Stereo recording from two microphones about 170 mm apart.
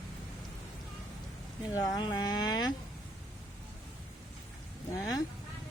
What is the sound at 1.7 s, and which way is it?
Speech, 25° left (ahead or behind).